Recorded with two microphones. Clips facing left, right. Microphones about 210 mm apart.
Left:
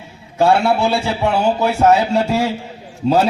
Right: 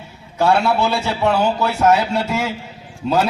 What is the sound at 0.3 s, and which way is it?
A man's voice, 25° left (ahead or behind).